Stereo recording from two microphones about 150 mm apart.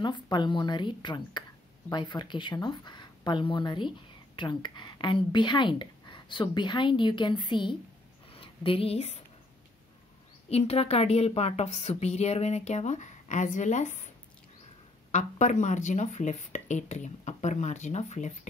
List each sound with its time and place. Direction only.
0.0 s a woman's voice: 30° left (ahead or behind)
10.5 s speech: 45° left (ahead or behind)
15.0 s speech: 50° left (ahead or behind)